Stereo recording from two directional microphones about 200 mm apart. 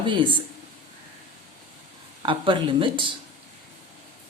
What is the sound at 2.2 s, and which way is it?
Speech, 25° right (ahead or behind).